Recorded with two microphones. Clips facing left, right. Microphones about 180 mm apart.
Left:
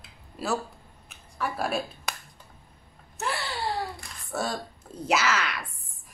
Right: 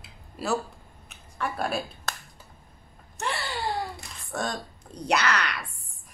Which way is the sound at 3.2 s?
Centre (ahead or behind).